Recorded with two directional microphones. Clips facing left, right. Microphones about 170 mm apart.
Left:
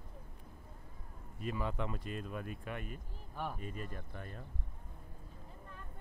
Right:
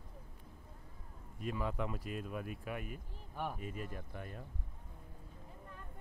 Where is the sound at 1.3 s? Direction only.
Centre (ahead or behind).